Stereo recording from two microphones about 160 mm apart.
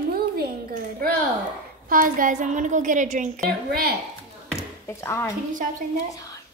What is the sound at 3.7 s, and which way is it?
Speech, 70° right (ahead or behind).